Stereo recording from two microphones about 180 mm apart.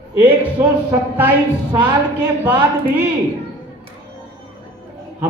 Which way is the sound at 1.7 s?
20° right (ahead or behind).